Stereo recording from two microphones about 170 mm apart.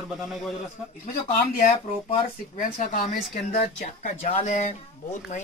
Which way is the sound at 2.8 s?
55° left (ahead or behind).